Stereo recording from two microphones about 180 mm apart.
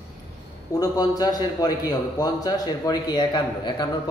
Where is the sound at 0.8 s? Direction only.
20° left (ahead or behind).